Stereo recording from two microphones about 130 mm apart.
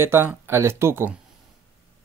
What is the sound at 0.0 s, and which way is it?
Speech, 20° right (ahead or behind).